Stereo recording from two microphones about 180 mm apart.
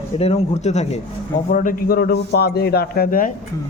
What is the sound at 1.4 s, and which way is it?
Speech, 50° left (ahead or behind).